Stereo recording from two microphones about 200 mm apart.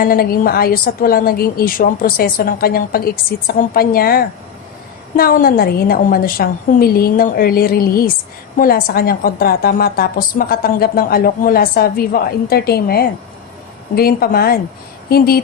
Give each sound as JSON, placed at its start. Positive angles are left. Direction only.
{"t": 0.0, "sound": "a woman's voice", "side_deg": 50}